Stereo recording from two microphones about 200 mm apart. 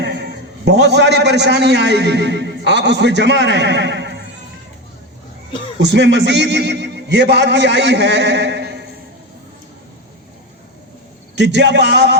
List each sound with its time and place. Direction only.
0.0 s a man's voice: 55° right (ahead or behind)
5.9 s a man's voice: 60° right (ahead or behind)
11.3 s a man's voice: 60° right (ahead or behind)